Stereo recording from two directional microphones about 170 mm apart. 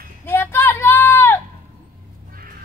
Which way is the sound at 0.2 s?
10° left (ahead or behind).